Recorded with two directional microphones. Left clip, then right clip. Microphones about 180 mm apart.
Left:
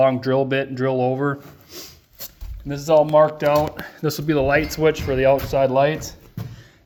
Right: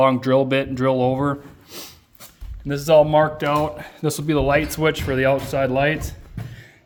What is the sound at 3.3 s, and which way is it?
Speech, 10° right (ahead or behind).